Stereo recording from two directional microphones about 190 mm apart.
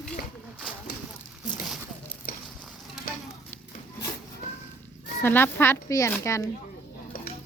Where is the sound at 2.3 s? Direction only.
50° left (ahead or behind).